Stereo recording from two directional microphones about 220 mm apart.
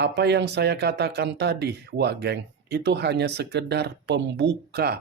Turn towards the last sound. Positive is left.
turn(degrees=-45)  # may be behind; listen again after turning